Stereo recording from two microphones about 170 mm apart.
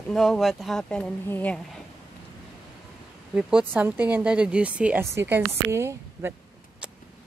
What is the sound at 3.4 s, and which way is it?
Speech, 5° right (ahead or behind).